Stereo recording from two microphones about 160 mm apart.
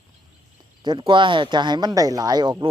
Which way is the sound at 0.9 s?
30° right (ahead or behind).